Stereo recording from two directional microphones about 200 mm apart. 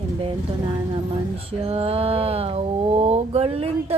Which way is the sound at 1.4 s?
30° right (ahead or behind).